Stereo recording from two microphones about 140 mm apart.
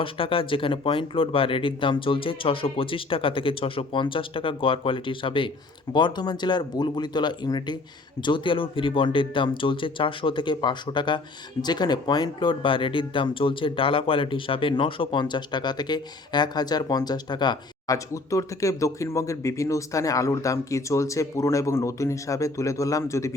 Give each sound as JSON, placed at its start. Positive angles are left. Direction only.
{"t": 0.0, "sound": "speech", "side_deg": 40}